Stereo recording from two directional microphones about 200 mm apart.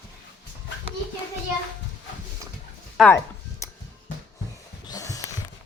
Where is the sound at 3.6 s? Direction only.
15° left (ahead or behind).